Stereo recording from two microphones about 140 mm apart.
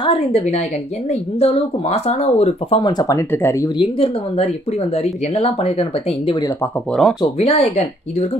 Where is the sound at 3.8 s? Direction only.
45° left (ahead or behind).